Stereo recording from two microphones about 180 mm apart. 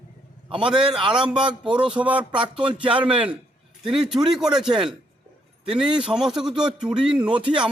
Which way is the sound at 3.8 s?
Centre (ahead or behind).